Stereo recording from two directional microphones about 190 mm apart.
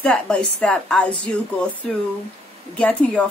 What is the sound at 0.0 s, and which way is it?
A woman's voice, 5° left (ahead or behind).